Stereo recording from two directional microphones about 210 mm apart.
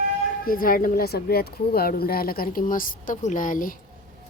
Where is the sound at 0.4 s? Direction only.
40° left (ahead or behind).